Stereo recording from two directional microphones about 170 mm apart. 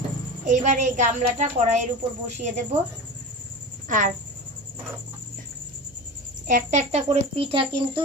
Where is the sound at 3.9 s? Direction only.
50° right (ahead or behind).